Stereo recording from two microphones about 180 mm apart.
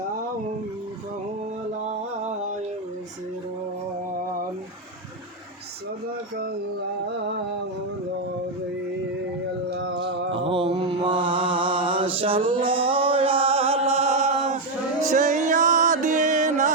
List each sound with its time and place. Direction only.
1.9 s music: 40° right (ahead or behind)
9.7 s music: 70° right (ahead or behind)
10.3 s mantra: 30° right (ahead or behind)
12.5 s music: 30° right (ahead or behind)